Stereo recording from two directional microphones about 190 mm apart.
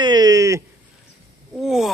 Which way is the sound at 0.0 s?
20° right (ahead or behind).